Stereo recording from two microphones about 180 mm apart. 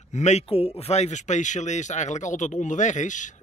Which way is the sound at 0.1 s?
40° left (ahead or behind).